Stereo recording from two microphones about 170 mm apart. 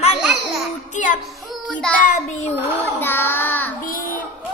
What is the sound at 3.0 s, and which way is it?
Child singing, 10° left (ahead or behind).